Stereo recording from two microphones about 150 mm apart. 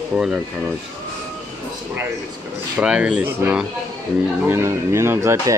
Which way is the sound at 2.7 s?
10° right (ahead or behind).